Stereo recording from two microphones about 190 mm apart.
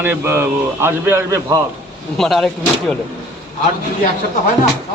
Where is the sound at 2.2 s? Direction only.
Centre (ahead or behind).